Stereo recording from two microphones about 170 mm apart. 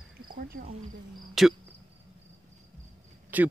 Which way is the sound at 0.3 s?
60° right (ahead or behind).